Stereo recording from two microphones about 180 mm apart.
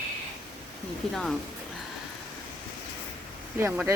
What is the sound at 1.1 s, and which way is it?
Speech, centre (ahead or behind).